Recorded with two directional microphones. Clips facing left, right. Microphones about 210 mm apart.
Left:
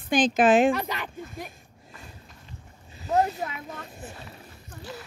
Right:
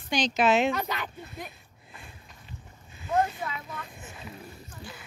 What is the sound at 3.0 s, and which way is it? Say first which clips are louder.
Speech: left 3 dB; 40° left (ahead or behind).